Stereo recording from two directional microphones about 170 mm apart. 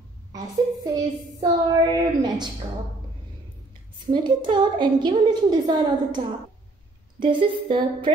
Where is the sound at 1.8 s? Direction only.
25° right (ahead or behind).